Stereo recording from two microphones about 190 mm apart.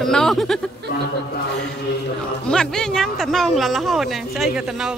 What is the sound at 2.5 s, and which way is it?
Speech, 5° left (ahead or behind).